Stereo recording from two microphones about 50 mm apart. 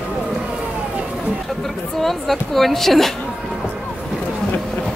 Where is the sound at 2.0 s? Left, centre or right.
Centre.